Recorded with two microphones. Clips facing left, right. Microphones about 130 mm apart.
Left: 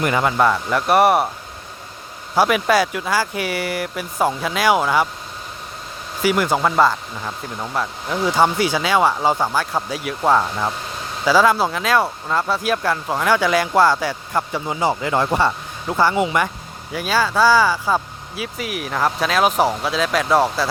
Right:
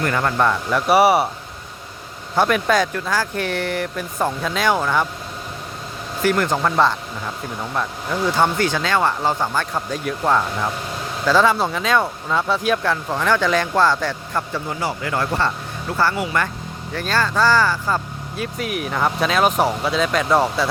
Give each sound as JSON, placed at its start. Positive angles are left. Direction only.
{"t": 0.0, "sound": "speech", "side_deg": 10}
{"t": 2.3, "sound": "speech", "side_deg": 5}
{"t": 6.2, "sound": "speech", "side_deg": 5}